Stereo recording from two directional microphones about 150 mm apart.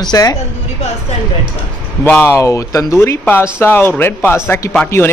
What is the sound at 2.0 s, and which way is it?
A man's voice, 15° left (ahead or behind).